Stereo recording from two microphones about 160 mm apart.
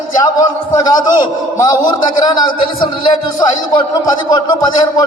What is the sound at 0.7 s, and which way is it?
A man's voice, 25° left (ahead or behind).